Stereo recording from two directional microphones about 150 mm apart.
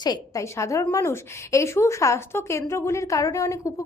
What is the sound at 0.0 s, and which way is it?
Speech, 25° left (ahead or behind).